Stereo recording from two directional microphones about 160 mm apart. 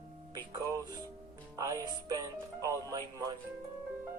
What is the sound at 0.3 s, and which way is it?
Speech, 25° right (ahead or behind).